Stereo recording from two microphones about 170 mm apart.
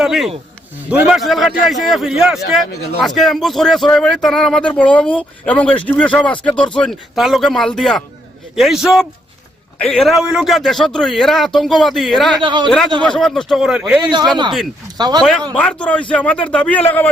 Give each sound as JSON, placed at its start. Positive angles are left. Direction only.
{"t": 0.0, "sound": "a man's voice", "side_deg": 0}
{"t": 12.4, "sound": "speech", "side_deg": -25}
{"t": 13.0, "sound": "a man's voice", "side_deg": 5}
{"t": 14.0, "sound": "speech", "side_deg": -25}
{"t": 15.2, "sound": "a man's voice", "side_deg": 0}